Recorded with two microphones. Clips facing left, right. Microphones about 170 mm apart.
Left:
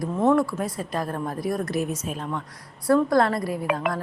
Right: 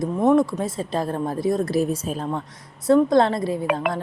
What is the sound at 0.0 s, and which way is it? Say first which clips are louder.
A woman's voice: right 3 dB; 20° right (ahead or behind).